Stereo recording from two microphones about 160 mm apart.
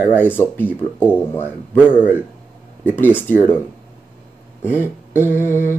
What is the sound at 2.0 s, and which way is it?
Speech, 10° right (ahead or behind).